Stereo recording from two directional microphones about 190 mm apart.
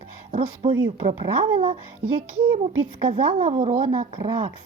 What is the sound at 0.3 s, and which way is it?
Speech, 35° right (ahead or behind).